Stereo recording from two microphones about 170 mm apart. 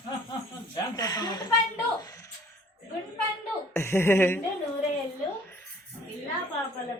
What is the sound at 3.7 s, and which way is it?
Speech, 15° left (ahead or behind).